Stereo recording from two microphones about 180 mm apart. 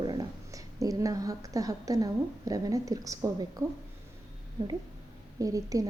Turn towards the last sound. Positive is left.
turn(degrees=-20)  # may be behind; listen again after turning